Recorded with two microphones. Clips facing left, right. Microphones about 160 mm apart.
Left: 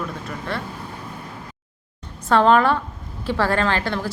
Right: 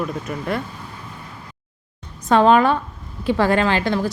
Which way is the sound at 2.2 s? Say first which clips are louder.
Right 2 dB; 15° right (ahead or behind).